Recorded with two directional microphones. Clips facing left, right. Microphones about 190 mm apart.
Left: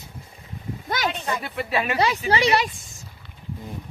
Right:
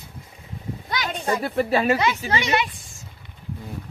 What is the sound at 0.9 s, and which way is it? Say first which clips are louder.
Speech: left 3 dB; 45° left (ahead or behind).